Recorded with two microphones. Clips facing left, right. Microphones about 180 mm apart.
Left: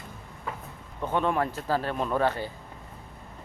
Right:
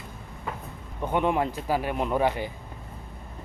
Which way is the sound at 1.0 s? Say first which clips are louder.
Right 2 dB; 15° right (ahead or behind).